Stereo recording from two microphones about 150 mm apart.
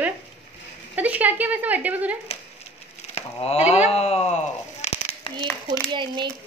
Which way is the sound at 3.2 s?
45° left (ahead or behind).